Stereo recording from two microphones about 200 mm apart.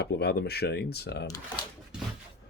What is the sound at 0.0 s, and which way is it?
Speech, 55° left (ahead or behind).